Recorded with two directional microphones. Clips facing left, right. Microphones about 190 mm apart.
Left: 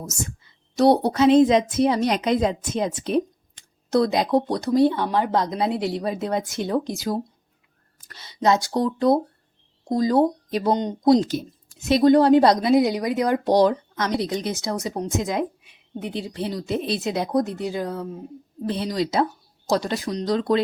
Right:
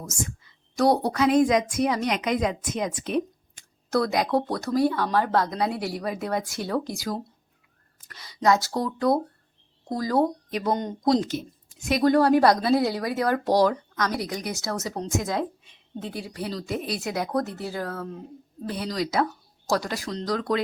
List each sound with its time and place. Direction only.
0.3 s speech: 25° left (ahead or behind)